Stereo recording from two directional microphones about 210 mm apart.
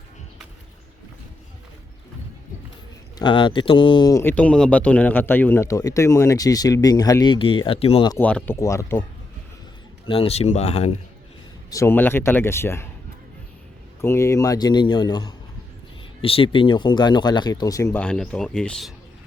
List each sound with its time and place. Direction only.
3.2 s speech: 20° left (ahead or behind)
8.2 s speech: 5° left (ahead or behind)
10.1 s speech: 30° left (ahead or behind)
11.7 s speech: 10° left (ahead or behind)
14.0 s speech: 15° left (ahead or behind)